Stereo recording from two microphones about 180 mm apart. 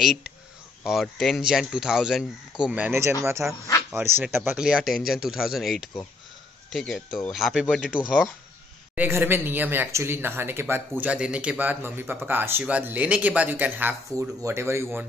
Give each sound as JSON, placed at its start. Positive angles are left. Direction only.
{"t": 0.0, "sound": "speech", "side_deg": 0}
{"t": 8.9, "sound": "speech", "side_deg": -10}